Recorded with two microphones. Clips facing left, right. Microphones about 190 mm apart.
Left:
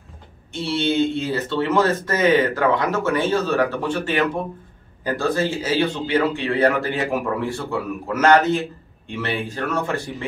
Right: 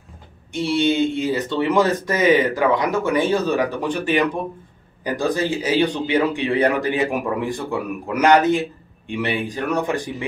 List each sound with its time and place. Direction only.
0.5 s speech: 15° right (ahead or behind)